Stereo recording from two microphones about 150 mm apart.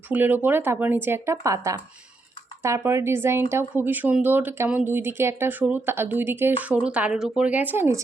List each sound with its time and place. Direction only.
0.1 s speech: 10° right (ahead or behind)